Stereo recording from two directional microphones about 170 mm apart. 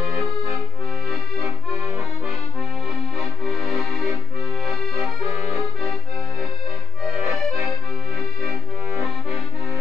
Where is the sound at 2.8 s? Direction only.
Centre (ahead or behind).